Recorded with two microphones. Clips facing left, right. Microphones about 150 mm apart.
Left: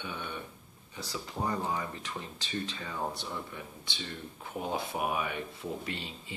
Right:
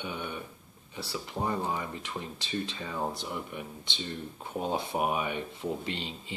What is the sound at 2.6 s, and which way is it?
Speech, 15° right (ahead or behind).